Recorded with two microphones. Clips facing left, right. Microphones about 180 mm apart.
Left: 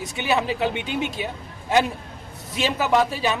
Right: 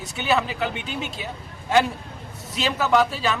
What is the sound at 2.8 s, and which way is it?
Speech, 20° left (ahead or behind).